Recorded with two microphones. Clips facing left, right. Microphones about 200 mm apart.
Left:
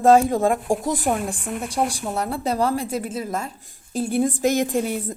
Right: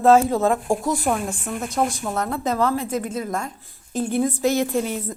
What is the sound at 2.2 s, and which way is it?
Speech, 30° left (ahead or behind).